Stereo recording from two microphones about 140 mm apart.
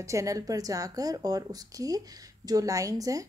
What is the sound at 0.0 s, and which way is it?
Speech, 20° right (ahead or behind).